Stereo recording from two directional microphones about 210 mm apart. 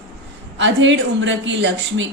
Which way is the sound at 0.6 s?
60° right (ahead or behind).